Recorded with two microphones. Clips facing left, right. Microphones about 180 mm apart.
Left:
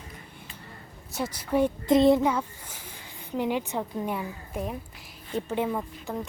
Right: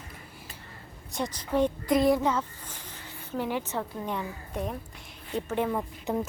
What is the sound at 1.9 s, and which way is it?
Speech, 25° left (ahead or behind).